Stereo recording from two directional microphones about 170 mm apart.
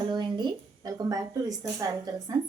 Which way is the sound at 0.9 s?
20° right (ahead or behind).